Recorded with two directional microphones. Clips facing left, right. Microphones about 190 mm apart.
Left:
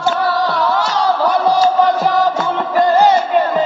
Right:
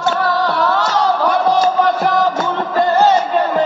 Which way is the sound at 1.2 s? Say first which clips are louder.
Left 2 dB; 15° left (ahead or behind).